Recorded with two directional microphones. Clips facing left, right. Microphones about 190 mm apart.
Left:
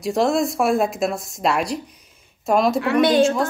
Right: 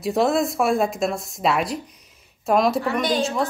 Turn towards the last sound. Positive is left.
turn(degrees=0)  # may be behind; listen again after turning